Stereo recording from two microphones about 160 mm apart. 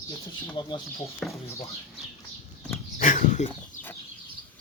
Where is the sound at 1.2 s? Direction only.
5° left (ahead or behind).